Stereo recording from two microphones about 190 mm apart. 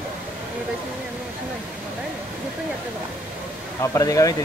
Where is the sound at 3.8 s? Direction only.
15° left (ahead or behind).